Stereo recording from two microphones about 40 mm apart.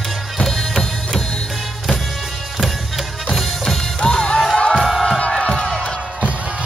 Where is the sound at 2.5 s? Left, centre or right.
Centre.